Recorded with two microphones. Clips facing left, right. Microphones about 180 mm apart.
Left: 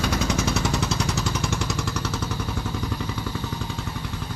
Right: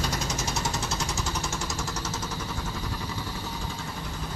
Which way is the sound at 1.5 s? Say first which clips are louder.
Left 5 dB; 65° left (ahead or behind).